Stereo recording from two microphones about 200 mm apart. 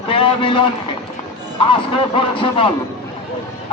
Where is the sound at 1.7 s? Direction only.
25° left (ahead or behind).